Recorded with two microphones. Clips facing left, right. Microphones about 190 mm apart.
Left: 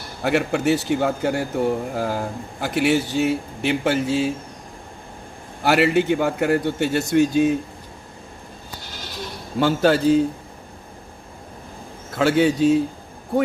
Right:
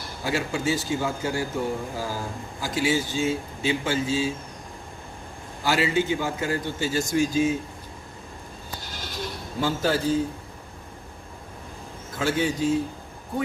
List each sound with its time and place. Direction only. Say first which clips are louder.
0.2 s a man's voice: left 7 dB; 65° left (ahead or behind)
5.6 s a man's voice: left 6 dB; 65° left (ahead or behind)
9.6 s a man's voice: left 7 dB; 65° left (ahead or behind)
12.1 s a man's voice: left 7 dB; 65° left (ahead or behind)